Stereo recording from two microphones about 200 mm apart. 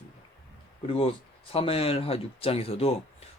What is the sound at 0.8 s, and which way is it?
Speech, 25° left (ahead or behind).